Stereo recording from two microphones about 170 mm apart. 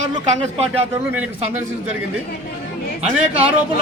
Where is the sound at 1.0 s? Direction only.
10° right (ahead or behind).